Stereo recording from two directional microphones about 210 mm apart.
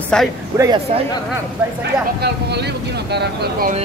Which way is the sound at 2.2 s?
50° right (ahead or behind).